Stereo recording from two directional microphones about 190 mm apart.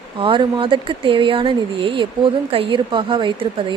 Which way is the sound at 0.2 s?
25° right (ahead or behind).